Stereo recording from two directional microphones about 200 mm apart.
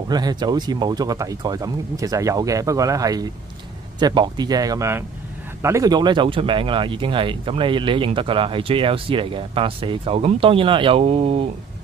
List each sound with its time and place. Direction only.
0.1 s speech: 20° right (ahead or behind)